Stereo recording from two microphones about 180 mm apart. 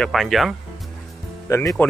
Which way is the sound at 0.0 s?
Centre (ahead or behind).